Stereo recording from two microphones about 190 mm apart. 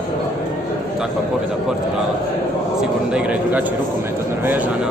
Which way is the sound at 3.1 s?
5° right (ahead or behind).